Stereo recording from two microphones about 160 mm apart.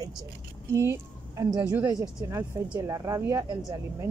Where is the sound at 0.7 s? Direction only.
20° right (ahead or behind).